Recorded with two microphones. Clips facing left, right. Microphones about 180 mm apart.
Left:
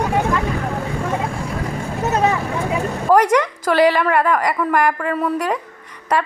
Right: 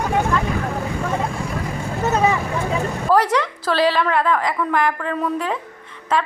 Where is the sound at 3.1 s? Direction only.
15° left (ahead or behind).